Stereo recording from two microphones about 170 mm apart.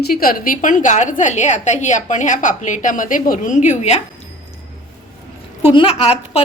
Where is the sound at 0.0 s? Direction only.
60° left (ahead or behind); by 4.0 s 40° left (ahead or behind).